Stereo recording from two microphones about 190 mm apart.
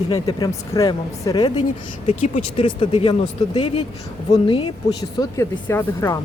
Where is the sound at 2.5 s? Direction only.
30° left (ahead or behind).